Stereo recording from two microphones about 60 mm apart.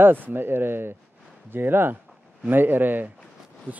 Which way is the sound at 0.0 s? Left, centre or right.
Right.